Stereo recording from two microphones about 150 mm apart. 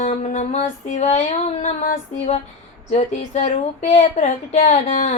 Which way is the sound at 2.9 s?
50° left (ahead or behind).